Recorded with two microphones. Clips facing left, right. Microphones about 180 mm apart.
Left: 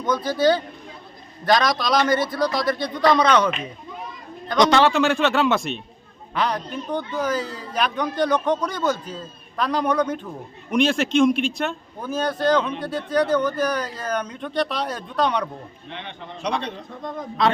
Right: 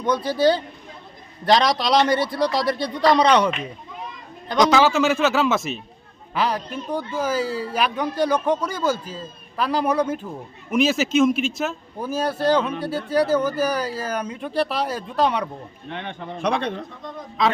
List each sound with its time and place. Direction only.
0.0 s a man's voice: 30° right (ahead or behind)
4.5 s a man's voice: 5° right (ahead or behind)
15.9 s a man's voice: 50° right (ahead or behind)
17.0 s speech: 50° left (ahead or behind)